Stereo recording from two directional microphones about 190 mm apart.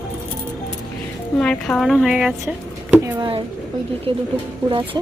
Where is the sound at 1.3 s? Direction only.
5° left (ahead or behind).